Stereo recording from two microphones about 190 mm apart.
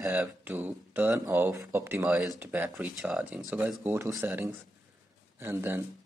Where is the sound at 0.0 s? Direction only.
5° right (ahead or behind).